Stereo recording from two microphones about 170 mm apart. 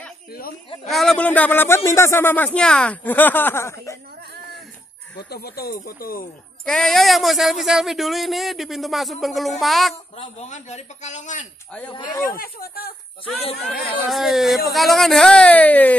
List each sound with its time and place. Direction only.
0.3 s a sound: 60° left (ahead or behind)
0.8 s speech: centre (ahead or behind)
5.3 s speech: 65° left (ahead or behind)
6.6 s speech: 5° left (ahead or behind)
10.1 s a man's voice: 40° left (ahead or behind)
11.9 s speech: 25° left (ahead or behind)
12.4 s speech: 60° left (ahead or behind)
14.0 s speech: centre (ahead or behind)